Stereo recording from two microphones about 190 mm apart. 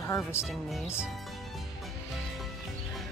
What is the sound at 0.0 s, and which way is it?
Speech, 15° left (ahead or behind).